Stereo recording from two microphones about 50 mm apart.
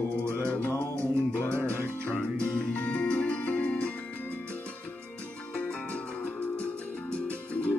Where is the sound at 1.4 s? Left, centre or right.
Right.